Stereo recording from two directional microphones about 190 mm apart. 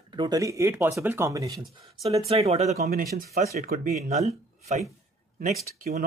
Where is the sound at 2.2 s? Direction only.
35° right (ahead or behind).